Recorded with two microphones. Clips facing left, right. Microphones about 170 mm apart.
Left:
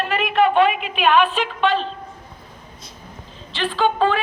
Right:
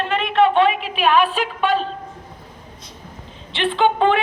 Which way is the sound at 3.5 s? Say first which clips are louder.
Right 2 dB; 20° right (ahead or behind).